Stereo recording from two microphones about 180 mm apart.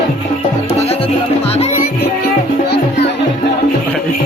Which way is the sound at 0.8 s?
35° left (ahead or behind).